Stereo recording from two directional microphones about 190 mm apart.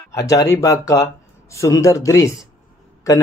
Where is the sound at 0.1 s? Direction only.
15° left (ahead or behind).